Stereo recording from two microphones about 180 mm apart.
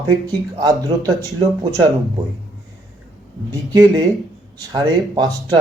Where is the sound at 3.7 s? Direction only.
20° right (ahead or behind).